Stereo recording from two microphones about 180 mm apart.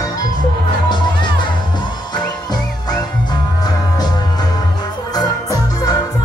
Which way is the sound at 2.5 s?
20° left (ahead or behind).